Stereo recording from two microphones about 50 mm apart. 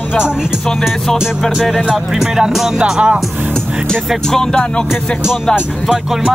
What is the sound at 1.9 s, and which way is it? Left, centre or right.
Music, centre.